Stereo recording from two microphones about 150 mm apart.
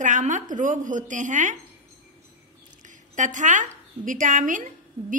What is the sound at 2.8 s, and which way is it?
A woman's voice, 55° right (ahead or behind).